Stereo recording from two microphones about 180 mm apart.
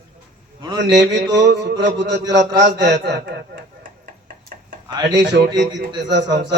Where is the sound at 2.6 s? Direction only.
75° right (ahead or behind); by 4.7 s 50° right (ahead or behind).